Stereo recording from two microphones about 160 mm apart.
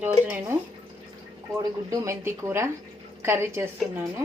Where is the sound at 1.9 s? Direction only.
20° right (ahead or behind).